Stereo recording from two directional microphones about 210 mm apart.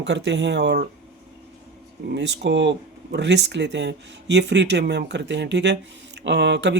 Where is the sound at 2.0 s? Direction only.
55° right (ahead or behind).